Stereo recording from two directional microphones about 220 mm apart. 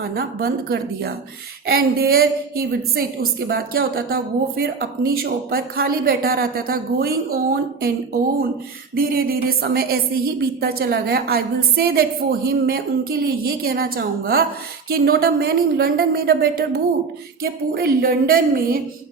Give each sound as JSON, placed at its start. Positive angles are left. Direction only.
{"t": 0.1, "sound": "a woman's voice", "side_deg": -40}
{"t": 9.0, "sound": "a woman's voice", "side_deg": -40}